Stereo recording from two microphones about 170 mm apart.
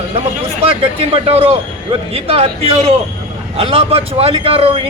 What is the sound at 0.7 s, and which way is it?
A man's voice, 35° right (ahead or behind).